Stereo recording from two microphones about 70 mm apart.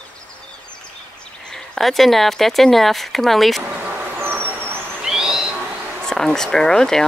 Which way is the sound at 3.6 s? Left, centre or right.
Right.